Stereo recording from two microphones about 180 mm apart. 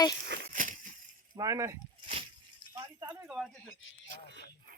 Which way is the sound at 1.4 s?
15° right (ahead or behind).